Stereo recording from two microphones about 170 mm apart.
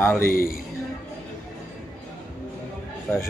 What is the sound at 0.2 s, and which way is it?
Speech, 60° left (ahead or behind).